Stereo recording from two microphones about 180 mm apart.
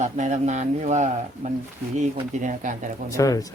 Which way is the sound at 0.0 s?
40° right (ahead or behind).